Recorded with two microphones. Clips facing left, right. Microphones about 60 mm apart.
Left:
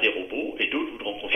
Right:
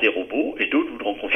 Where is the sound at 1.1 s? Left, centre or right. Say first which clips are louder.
Right 6 dB; right.